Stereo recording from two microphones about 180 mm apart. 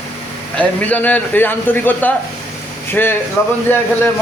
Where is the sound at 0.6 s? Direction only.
10° left (ahead or behind).